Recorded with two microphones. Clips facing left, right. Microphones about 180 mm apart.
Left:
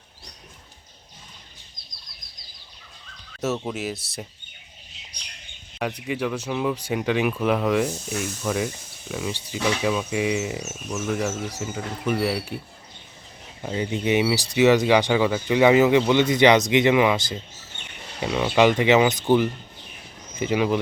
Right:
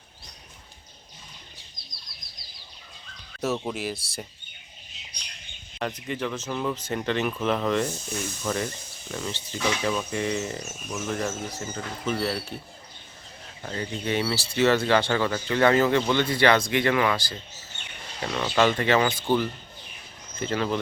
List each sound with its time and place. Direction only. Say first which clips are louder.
3.4 s speech: left 1 dB; centre (ahead or behind)
5.8 s speech: left 3 dB; 10° left (ahead or behind)
13.6 s speech: left 6 dB; 15° left (ahead or behind)